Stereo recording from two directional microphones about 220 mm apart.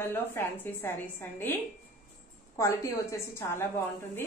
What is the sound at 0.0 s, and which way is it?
A woman's voice, 10° left (ahead or behind).